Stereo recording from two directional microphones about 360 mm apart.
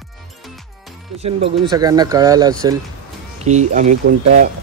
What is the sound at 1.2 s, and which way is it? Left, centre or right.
Speech, centre.